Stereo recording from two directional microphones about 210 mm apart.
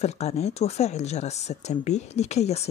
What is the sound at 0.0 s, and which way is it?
Speech, 30° left (ahead or behind).